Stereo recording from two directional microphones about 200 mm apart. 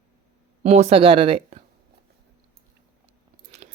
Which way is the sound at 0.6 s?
30° right (ahead or behind).